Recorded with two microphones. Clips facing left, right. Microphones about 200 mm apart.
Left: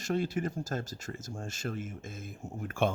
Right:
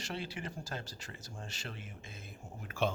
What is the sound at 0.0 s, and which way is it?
Speech, 45° left (ahead or behind).